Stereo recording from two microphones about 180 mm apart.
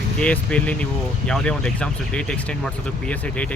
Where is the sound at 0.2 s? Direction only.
5° left (ahead or behind).